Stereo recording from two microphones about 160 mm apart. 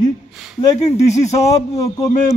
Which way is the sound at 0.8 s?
45° left (ahead or behind).